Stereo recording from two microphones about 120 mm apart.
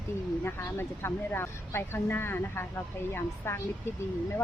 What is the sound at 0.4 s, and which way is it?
A woman's voice, 20° left (ahead or behind).